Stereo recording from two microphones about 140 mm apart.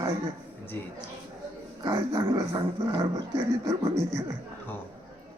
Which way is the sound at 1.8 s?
25° right (ahead or behind).